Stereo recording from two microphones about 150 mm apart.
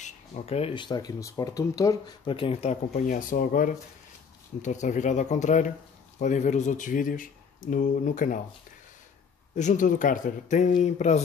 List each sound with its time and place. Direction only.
0.0 s speech: 40° left (ahead or behind); by 3.7 s 65° left (ahead or behind)
4.6 s speech: 55° left (ahead or behind)
9.6 s speech: 55° left (ahead or behind)